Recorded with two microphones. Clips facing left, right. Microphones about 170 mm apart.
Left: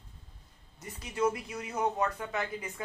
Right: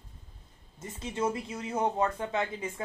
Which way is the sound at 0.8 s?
25° right (ahead or behind).